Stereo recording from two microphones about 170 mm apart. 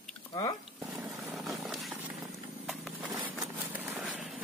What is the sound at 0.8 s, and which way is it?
Dog, 10° right (ahead or behind).